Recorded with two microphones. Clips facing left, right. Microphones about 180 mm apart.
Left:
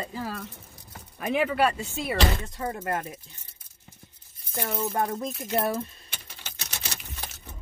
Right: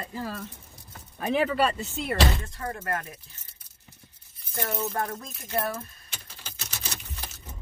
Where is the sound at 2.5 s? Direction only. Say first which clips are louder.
Left 2 dB; 25° left (ahead or behind).